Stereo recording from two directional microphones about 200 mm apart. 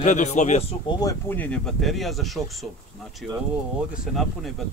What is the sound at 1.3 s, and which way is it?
Speech, 5° left (ahead or behind).